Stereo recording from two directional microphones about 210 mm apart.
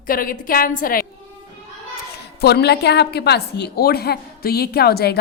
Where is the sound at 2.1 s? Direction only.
50° left (ahead or behind).